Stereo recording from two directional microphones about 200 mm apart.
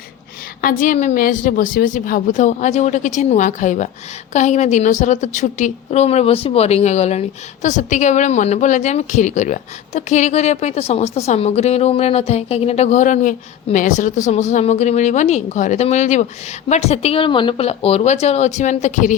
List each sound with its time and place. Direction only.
0.6 s a woman's voice: 45° left (ahead or behind)